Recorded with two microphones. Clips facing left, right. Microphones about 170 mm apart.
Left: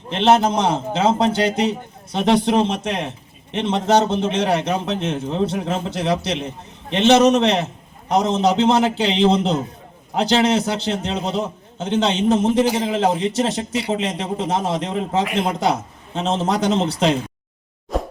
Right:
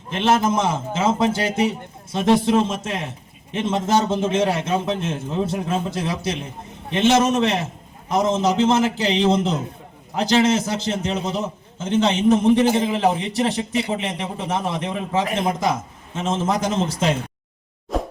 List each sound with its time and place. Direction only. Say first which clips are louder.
0.2 s a man's voice: left 3 dB; 65° left (ahead or behind)
17.9 s plop: left 1 dB; centre (ahead or behind)